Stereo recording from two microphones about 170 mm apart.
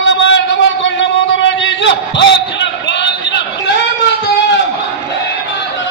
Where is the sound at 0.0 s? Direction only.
90° left.